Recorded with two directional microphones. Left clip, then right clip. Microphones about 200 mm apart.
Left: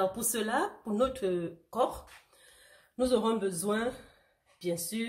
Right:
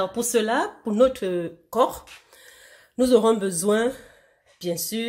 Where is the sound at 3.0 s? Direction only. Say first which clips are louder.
Right 10 dB; 50° right (ahead or behind).